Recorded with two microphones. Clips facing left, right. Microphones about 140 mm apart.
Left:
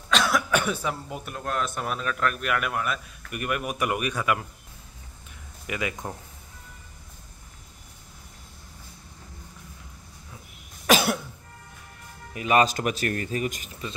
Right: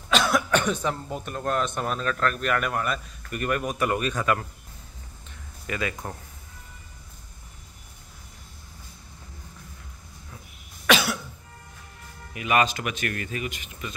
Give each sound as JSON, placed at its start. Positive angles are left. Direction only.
{"t": 0.1, "sound": "speech", "side_deg": 0}
{"t": 5.7, "sound": "speech", "side_deg": 15}
{"t": 10.9, "sound": "cough", "side_deg": 50}
{"t": 12.4, "sound": "speech", "side_deg": 35}